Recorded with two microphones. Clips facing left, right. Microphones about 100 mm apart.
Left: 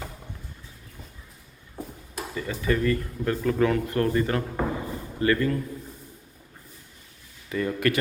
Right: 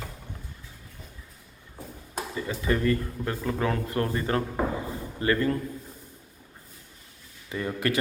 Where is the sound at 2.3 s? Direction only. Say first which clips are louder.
Left 2 dB; 25° right (ahead or behind).